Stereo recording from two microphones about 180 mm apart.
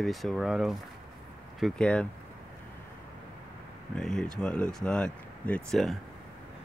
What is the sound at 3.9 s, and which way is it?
Speech, 5° left (ahead or behind).